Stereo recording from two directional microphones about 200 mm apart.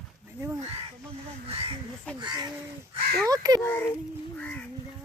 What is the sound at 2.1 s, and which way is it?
Speech, 20° right (ahead or behind).